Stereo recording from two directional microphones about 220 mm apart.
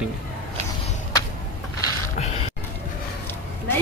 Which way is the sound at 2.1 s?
30° left (ahead or behind).